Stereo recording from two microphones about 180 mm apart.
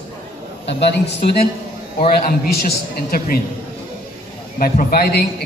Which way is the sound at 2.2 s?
55° left (ahead or behind).